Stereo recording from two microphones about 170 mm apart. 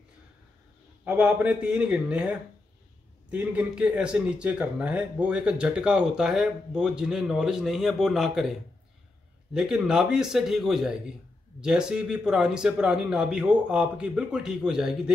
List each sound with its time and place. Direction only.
1.0 s speech: 5° right (ahead or behind)